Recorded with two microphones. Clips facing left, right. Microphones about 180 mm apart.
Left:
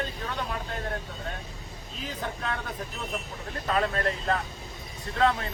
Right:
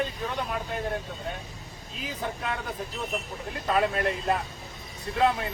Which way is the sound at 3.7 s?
10° right (ahead or behind).